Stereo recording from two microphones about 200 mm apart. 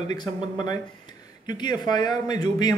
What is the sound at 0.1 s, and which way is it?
A man's voice, 20° left (ahead or behind).